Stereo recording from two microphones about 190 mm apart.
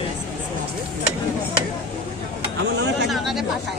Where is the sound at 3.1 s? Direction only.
Centre (ahead or behind).